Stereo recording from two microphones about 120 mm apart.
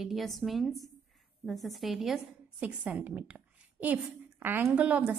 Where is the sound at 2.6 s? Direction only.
10° right (ahead or behind).